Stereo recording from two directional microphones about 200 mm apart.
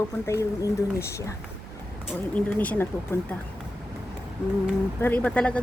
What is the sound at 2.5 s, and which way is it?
Speech, 10° left (ahead or behind).